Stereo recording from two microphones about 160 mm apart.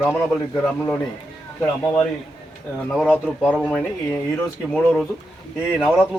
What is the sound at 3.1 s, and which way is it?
Speech, 5° left (ahead or behind).